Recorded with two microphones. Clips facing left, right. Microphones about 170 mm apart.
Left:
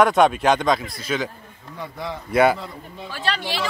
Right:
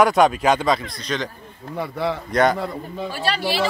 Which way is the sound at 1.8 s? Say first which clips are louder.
Right 7 dB; 75° right (ahead or behind).